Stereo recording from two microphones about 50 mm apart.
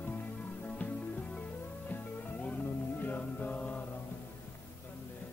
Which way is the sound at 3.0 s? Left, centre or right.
Left.